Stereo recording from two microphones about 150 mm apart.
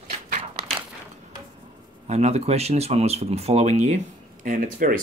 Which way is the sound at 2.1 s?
45° right (ahead or behind).